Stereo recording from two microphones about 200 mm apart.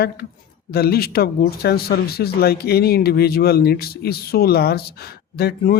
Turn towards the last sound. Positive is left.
turn(degrees=50)  # may be behind; listen again after turning